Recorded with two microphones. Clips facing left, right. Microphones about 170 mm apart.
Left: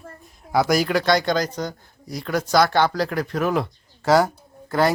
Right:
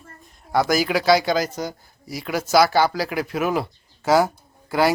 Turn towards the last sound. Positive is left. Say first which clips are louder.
# even
turn(degrees=-10)  # may be behind; listen again after turning